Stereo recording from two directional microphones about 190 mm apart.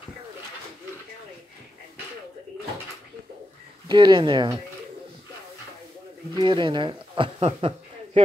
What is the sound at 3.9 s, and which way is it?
Speech, 25° right (ahead or behind).